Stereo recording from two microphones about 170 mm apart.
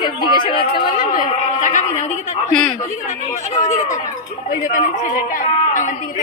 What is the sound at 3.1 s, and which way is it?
A woman's voice, 45° left (ahead or behind).